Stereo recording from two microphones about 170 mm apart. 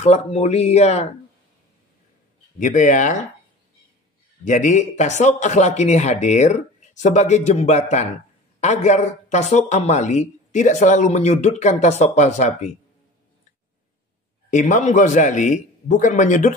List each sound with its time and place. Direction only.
0.0 s speech: 40° left (ahead or behind)
2.6 s speech: 45° left (ahead or behind)
4.5 s speech: 45° left (ahead or behind)
14.5 s speech: 45° left (ahead or behind)